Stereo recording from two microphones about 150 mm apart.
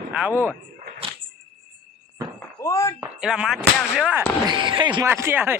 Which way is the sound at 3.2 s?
5° right (ahead or behind).